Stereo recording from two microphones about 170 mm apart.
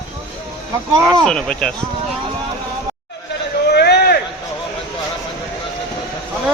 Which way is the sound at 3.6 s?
75° left (ahead or behind).